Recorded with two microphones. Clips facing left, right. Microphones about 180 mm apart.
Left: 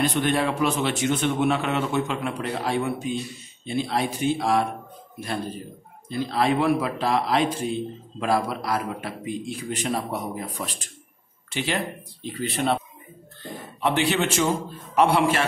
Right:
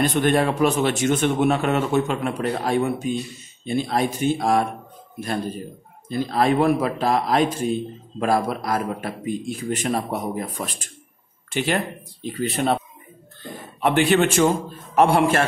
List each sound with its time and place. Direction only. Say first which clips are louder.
0.0 s speech: right 4 dB; 50° right (ahead or behind)
6.0 s speech: right 3 dB; 50° right (ahead or behind)
13.7 s speech: right 5 dB; 55° right (ahead or behind)